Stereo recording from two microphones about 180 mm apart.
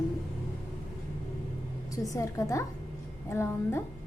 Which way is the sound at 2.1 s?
15° left (ahead or behind).